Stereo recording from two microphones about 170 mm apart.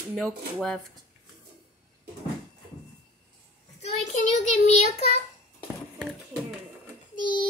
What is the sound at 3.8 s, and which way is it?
Child singing, 45° left (ahead or behind).